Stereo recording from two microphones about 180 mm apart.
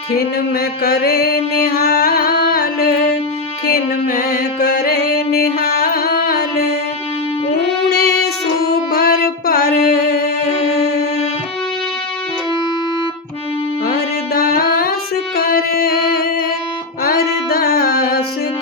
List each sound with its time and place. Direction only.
0.2 s music: 60° left (ahead or behind)
7.9 s female singing: 60° left (ahead or behind)
9.0 s music: 55° left (ahead or behind)
13.8 s music: 55° left (ahead or behind)